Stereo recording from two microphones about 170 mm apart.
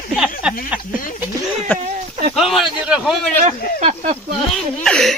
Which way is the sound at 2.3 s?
Centre (ahead or behind).